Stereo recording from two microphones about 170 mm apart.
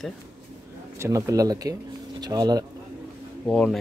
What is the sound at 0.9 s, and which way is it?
Speech, 20° right (ahead or behind).